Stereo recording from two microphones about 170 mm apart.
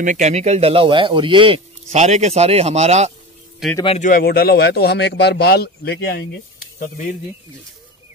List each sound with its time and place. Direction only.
0.0 s speech: 45° right (ahead or behind)
3.6 s a man's voice: centre (ahead or behind)
4.0 s speech: 60° left (ahead or behind)